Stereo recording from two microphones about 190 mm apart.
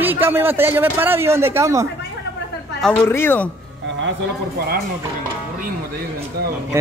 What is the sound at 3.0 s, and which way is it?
Speech, 10° left (ahead or behind).